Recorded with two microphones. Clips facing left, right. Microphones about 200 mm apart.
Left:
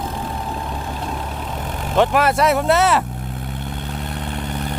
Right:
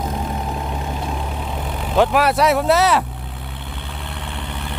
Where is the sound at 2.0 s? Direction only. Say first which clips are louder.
Even; centre (ahead or behind).